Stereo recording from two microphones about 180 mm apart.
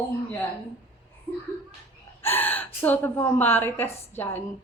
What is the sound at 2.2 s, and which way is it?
A woman's voice, 10° left (ahead or behind).